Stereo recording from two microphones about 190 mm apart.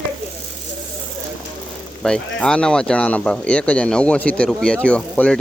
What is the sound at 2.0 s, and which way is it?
Speech, 5° left (ahead or behind).